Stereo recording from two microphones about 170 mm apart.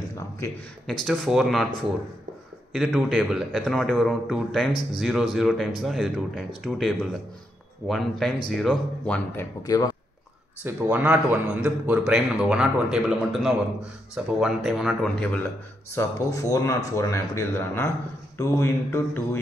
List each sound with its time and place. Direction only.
1.0 s a man's voice: centre (ahead or behind)
2.7 s a man's voice: centre (ahead or behind); by 9.8 s 20° left (ahead or behind)
10.6 s a man's voice: 10° right (ahead or behind)
15.9 s speech: 15° left (ahead or behind)